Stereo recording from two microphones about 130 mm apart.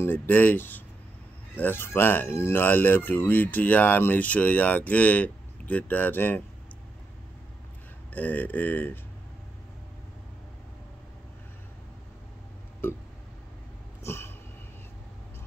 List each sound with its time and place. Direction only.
0.0 s speech: 15° left (ahead or behind)
8.1 s speech: 15° left (ahead or behind)
12.8 s speech: 15° left (ahead or behind)
14.0 s a sound: 20° left (ahead or behind)